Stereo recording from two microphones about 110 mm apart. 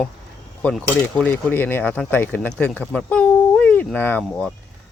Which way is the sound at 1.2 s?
15° left (ahead or behind).